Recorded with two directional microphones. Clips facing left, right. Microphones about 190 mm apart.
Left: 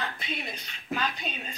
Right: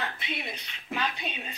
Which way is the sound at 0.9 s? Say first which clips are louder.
Left 1 dB; centre (ahead or behind).